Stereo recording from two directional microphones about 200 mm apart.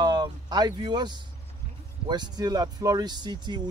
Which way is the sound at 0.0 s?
20° right (ahead or behind).